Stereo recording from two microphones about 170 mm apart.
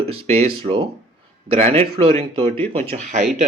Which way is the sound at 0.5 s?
30° right (ahead or behind).